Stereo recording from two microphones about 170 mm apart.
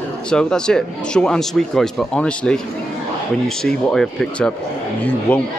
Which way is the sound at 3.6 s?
5° left (ahead or behind).